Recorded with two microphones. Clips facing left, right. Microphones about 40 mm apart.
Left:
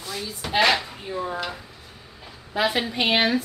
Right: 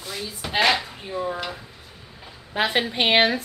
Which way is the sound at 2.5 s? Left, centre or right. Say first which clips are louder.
Right 1 dB; right.